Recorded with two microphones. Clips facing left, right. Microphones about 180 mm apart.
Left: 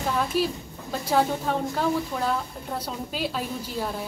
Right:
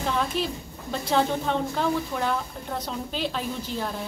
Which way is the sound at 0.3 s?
5° left (ahead or behind).